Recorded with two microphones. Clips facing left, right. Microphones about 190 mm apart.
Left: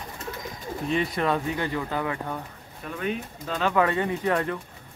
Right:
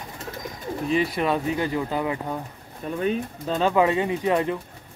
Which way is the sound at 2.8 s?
30° right (ahead or behind).